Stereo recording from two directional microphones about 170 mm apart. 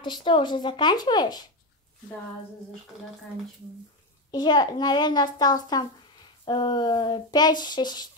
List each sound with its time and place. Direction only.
0.0 s speech: 30° left (ahead or behind)
4.3 s speech: 25° left (ahead or behind)